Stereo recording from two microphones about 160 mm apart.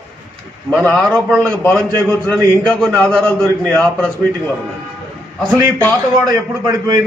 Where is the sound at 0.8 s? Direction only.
5° left (ahead or behind).